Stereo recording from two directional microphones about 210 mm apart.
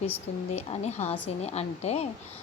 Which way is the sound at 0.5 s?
30° left (ahead or behind).